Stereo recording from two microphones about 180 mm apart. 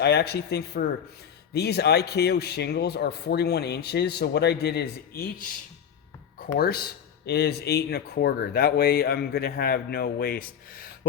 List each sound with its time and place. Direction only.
0.0 s speech: 65° left (ahead or behind)
6.6 s speech: 60° left (ahead or behind)